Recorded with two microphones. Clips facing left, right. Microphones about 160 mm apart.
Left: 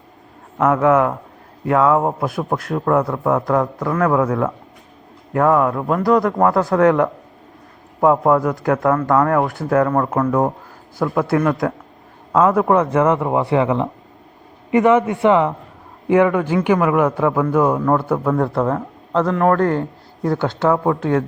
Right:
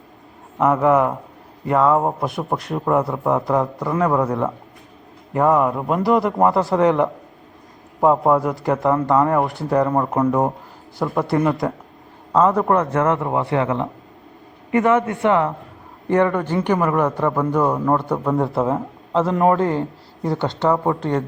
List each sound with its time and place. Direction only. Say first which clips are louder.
0.6 s a man's voice: left 1 dB; centre (ahead or behind)